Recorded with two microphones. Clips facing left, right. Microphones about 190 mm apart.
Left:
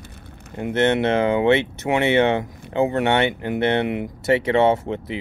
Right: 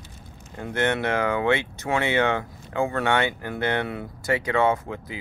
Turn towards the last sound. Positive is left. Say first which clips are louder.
# left 5 dB
turn(degrees=25)  # may be behind; listen again after turning